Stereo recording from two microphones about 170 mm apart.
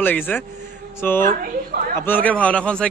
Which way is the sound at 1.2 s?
55° right (ahead or behind).